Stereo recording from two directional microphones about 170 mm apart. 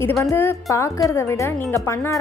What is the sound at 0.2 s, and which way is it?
Speech, 15° left (ahead or behind).